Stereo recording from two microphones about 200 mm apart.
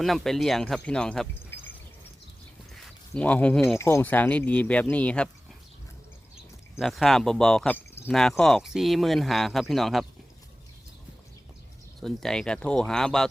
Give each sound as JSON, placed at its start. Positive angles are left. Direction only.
{"t": 0.0, "sound": "speech", "side_deg": 0}
{"t": 3.2, "sound": "speech", "side_deg": 5}
{"t": 3.8, "sound": "speech", "side_deg": 10}
{"t": 6.7, "sound": "speech", "side_deg": 0}
{"t": 11.9, "sound": "speech", "side_deg": 0}